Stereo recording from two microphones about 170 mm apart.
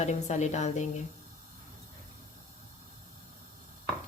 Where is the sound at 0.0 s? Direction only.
45° left (ahead or behind).